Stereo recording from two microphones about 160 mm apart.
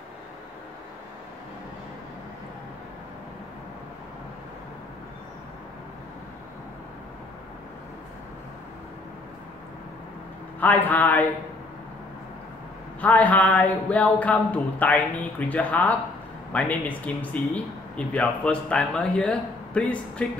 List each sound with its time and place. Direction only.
10.6 s speech: 10° left (ahead or behind)
13.0 s speech: 10° left (ahead or behind)